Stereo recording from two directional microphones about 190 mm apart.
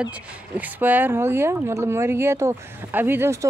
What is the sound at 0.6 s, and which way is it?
Speech, 10° right (ahead or behind).